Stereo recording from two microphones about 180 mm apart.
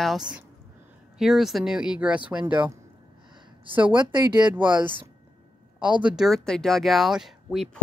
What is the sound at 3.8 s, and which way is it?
Speech, 25° right (ahead or behind).